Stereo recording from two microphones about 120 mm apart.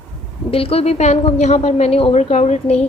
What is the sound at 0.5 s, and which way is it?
A woman's voice, 50° left (ahead or behind).